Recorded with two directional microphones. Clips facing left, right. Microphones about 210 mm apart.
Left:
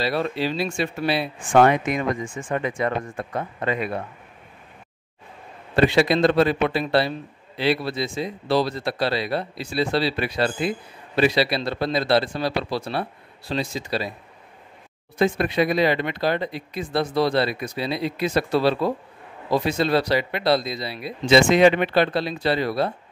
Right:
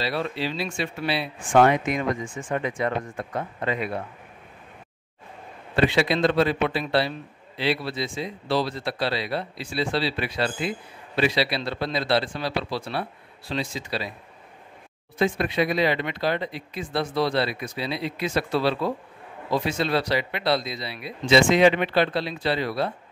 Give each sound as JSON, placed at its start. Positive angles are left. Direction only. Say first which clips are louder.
{"t": 0.0, "sound": "a man's voice", "louder": "left 4 dB", "side_deg": 45}
{"t": 5.8, "sound": "a man's voice", "louder": "left 3 dB", "side_deg": 45}
{"t": 15.1, "sound": "speech", "louder": "left 3 dB", "side_deg": 40}